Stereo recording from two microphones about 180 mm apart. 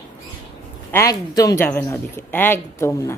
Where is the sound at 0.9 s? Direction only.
15° left (ahead or behind).